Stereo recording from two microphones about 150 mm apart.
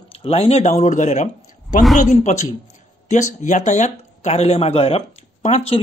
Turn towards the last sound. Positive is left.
turn(degrees=45)  # may be behind; listen again after turning